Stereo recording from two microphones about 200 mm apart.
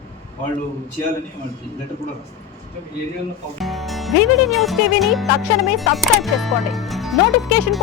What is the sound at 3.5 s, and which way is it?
Music, centre (ahead or behind).